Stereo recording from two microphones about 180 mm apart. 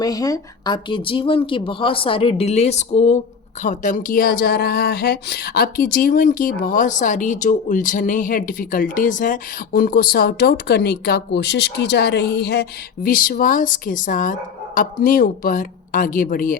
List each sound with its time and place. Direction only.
0.0 s speech: 20° left (ahead or behind); by 16.6 s 50° left (ahead or behind)